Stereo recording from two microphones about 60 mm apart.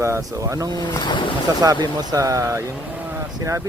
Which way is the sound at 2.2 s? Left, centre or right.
Right.